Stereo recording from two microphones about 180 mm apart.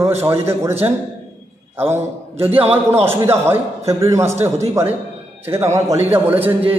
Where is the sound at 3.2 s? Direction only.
15° right (ahead or behind).